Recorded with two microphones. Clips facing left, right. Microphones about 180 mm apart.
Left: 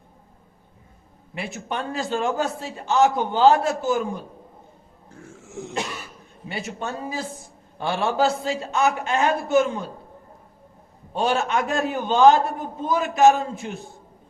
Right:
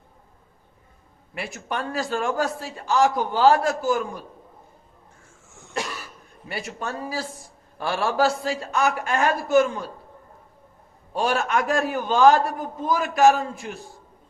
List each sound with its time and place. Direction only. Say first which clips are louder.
1.4 s a man's voice: even; 25° left (ahead or behind)
5.2 s dog: left 19 dB; 80° left
6.5 s a man's voice: left 1 dB; 25° left (ahead or behind)
11.2 s a man's voice: left 1 dB; 25° left (ahead or behind)